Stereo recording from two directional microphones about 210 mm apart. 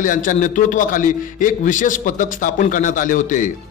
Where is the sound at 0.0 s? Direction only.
40° left (ahead or behind).